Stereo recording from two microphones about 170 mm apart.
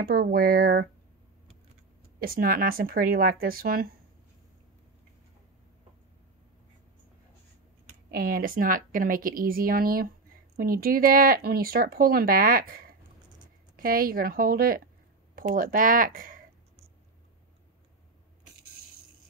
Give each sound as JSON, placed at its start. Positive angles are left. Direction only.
{"t": 0.0, "sound": "speech", "side_deg": -60}
{"t": 2.1, "sound": "speech", "side_deg": -60}
{"t": 8.1, "sound": "speech", "side_deg": -60}